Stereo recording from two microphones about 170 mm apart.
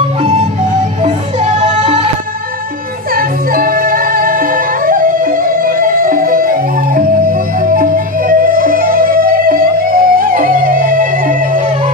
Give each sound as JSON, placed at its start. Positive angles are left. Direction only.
{"t": 1.0, "sound": "music", "side_deg": -45}
{"t": 3.2, "sound": "music", "side_deg": -55}